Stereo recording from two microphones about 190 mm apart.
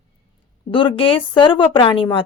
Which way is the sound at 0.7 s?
25° left (ahead or behind).